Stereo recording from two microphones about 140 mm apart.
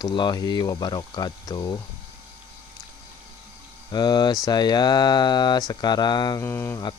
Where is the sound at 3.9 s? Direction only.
30° left (ahead or behind).